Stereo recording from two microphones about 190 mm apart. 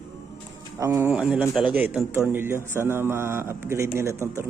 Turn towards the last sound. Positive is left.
turn(degrees=-15)  # may be behind; listen again after turning